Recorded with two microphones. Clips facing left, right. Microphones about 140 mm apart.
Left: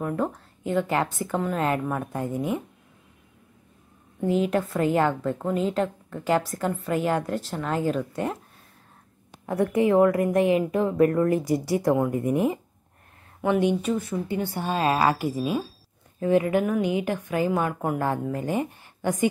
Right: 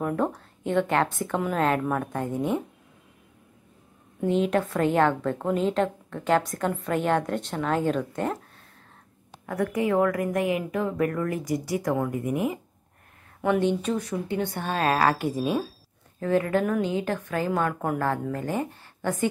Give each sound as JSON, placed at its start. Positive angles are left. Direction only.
{"t": 0.0, "sound": "a woman's voice", "side_deg": 0}
{"t": 4.3, "sound": "a woman's voice", "side_deg": 5}
{"t": 9.5, "sound": "a woman's voice", "side_deg": 25}
{"t": 13.4, "sound": "a woman's voice", "side_deg": 15}
{"t": 16.2, "sound": "a woman's voice", "side_deg": 15}